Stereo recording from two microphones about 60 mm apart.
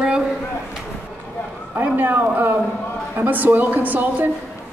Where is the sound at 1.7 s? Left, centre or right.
Right.